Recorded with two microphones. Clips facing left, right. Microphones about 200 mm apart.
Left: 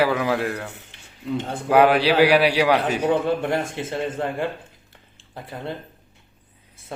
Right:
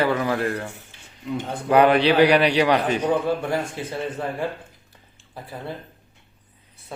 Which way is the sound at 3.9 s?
25° left (ahead or behind).